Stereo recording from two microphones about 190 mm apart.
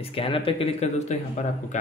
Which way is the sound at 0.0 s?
30° left (ahead or behind).